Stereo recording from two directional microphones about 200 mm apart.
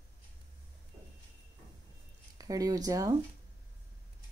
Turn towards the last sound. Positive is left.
turn(degrees=-20)  # may be behind; listen again after turning